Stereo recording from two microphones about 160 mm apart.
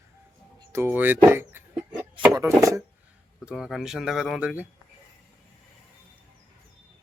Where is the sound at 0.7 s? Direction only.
15° right (ahead or behind).